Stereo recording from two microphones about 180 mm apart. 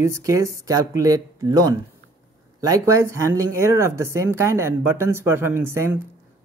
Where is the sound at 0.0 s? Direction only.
15° right (ahead or behind).